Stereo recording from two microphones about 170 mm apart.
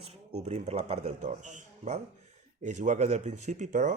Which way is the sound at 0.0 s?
40° right (ahead or behind).